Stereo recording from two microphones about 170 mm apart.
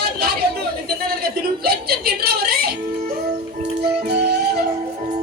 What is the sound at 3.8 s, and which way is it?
Music, 70° right (ahead or behind).